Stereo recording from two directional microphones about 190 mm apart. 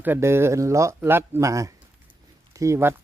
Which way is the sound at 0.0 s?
10° right (ahead or behind).